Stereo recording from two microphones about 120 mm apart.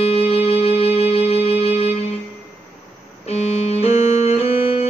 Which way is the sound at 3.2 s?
65° left (ahead or behind).